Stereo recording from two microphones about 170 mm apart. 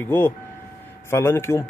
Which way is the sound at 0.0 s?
10° left (ahead or behind).